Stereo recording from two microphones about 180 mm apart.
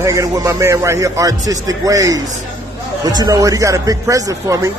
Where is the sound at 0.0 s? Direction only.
15° right (ahead or behind).